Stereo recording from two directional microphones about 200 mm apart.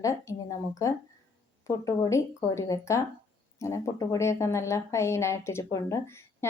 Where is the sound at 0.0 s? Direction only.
15° left (ahead or behind).